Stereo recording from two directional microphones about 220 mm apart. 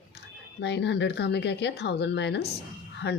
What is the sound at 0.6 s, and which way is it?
Speech, 50° left (ahead or behind).